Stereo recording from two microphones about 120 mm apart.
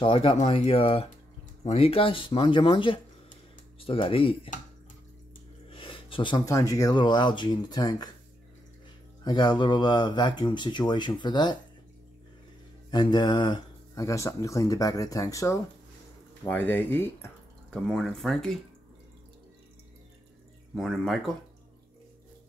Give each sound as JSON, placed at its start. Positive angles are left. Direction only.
{"t": 0.0, "sound": "speech", "side_deg": 45}
{"t": 5.7, "sound": "a sound", "side_deg": 45}
{"t": 6.3, "sound": "speech", "side_deg": 30}
{"t": 7.0, "sound": "speech", "side_deg": 40}
{"t": 9.2, "sound": "speech", "side_deg": 35}
{"t": 12.9, "sound": "mantra", "side_deg": 40}
{"t": 14.0, "sound": "speech", "side_deg": 25}
{"t": 16.4, "sound": "speech", "side_deg": 15}
{"t": 17.6, "sound": "speech", "side_deg": 5}
{"t": 20.7, "sound": "speech", "side_deg": 0}